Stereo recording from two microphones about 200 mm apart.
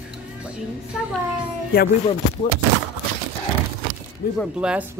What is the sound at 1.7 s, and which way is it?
Speech, 50° left (ahead or behind).